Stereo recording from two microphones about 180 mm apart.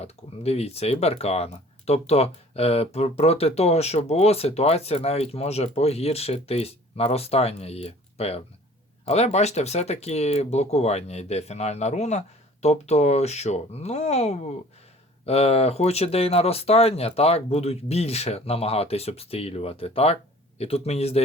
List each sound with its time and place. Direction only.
0.0 s speech: 35° left (ahead or behind)